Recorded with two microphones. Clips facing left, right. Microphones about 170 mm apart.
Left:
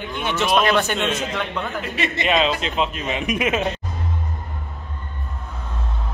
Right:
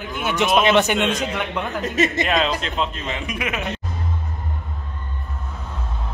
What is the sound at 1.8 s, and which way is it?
Speech, 40° right (ahead or behind).